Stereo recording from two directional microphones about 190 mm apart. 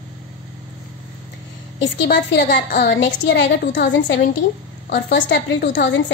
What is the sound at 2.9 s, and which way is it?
A woman's voice, 75° left (ahead or behind).